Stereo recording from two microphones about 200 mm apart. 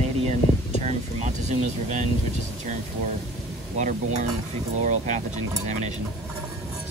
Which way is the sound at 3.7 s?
35° right (ahead or behind).